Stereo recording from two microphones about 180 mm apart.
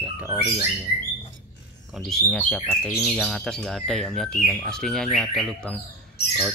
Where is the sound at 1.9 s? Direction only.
5° left (ahead or behind).